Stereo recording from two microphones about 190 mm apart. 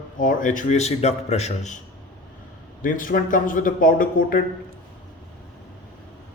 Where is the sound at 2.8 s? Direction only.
45° left (ahead or behind).